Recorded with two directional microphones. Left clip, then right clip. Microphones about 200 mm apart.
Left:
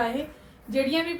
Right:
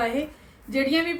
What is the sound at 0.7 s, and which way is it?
Speech, 20° right (ahead or behind).